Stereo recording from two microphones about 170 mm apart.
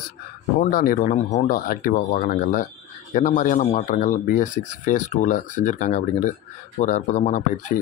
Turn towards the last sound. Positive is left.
turn(degrees=45)  # may be behind; listen again after turning